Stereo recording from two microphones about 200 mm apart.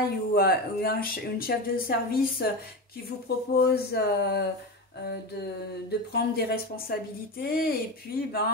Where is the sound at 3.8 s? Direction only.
55° left (ahead or behind).